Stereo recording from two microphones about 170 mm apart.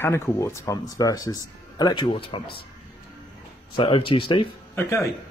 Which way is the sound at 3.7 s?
30° left (ahead or behind).